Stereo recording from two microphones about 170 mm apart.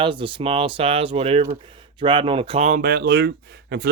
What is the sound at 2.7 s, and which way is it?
Speech, 60° right (ahead or behind).